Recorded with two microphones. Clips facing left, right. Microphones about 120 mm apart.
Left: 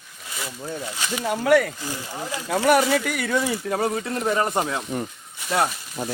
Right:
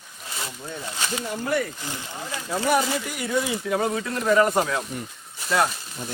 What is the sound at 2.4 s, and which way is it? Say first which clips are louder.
Speech: left 4 dB; 70° left (ahead or behind).